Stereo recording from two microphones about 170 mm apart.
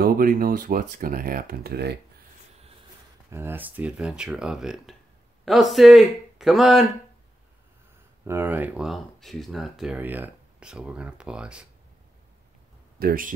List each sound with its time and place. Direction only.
0.0 s speech: 55° right (ahead or behind)
3.3 s speech: 15° right (ahead or behind)
8.3 s speech: 10° right (ahead or behind)
13.0 s speech: 55° right (ahead or behind)